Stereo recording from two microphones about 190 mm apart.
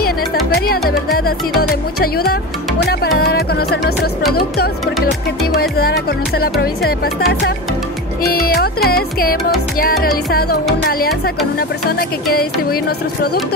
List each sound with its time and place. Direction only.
0.6 s music: 50° left (ahead or behind)
5.8 s music: 55° left (ahead or behind)
8.3 s music: 55° left (ahead or behind)